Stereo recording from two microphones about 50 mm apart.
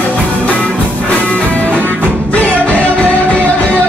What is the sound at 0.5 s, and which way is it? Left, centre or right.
Music, left.